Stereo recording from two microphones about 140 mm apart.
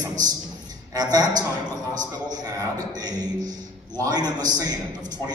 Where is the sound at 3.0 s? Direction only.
30° right (ahead or behind).